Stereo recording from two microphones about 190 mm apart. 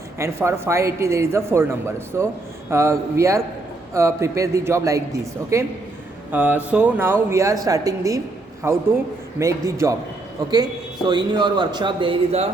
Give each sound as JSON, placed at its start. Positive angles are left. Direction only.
{"t": 0.2, "sound": "a man's voice", "side_deg": -15}
{"t": 9.4, "sound": "a man's voice", "side_deg": -15}